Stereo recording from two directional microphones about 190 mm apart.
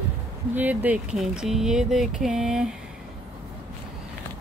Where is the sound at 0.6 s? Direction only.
10° right (ahead or behind).